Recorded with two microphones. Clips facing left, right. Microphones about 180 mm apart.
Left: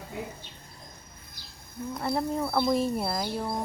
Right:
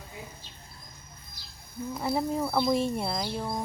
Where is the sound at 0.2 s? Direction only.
65° left (ahead or behind).